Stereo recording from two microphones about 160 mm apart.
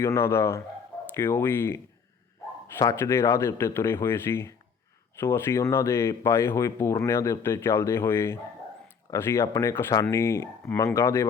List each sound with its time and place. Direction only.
0.0 s speech: 15° left (ahead or behind)